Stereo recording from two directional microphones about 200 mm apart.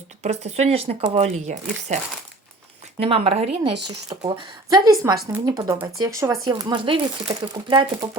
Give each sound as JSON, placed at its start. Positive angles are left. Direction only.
{"t": 0.2, "sound": "speech", "side_deg": -35}
{"t": 3.0, "sound": "a woman's voice", "side_deg": -30}